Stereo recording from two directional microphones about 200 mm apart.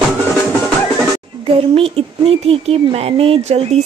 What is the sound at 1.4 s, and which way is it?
Speech, 30° right (ahead or behind).